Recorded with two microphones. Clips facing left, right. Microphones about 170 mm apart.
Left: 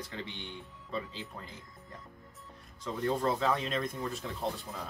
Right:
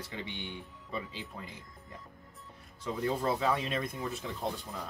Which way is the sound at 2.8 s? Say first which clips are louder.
Left 1 dB; 10° right (ahead or behind).